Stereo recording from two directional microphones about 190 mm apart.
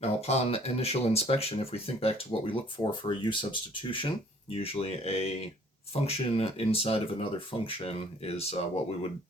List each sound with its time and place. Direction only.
0.0 s speech: 30° left (ahead or behind)